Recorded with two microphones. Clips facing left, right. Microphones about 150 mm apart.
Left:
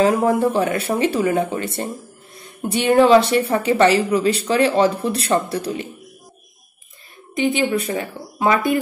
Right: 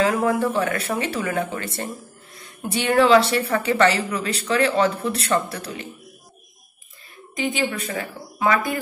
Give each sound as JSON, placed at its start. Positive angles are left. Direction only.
{"t": 0.0, "sound": "a woman's voice", "side_deg": 25}
{"t": 7.3, "sound": "a woman's voice", "side_deg": 30}